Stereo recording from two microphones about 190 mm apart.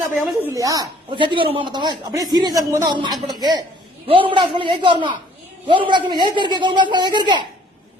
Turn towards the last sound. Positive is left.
turn(degrees=-25)  # may be behind; listen again after turning